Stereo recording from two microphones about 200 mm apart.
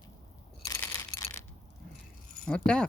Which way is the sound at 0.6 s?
15° left (ahead or behind).